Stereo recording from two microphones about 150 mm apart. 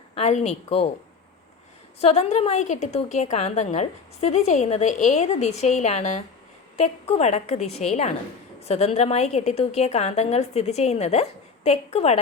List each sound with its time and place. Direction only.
0.1 s speech: 50° left (ahead or behind)
2.0 s a woman's voice: 45° left (ahead or behind)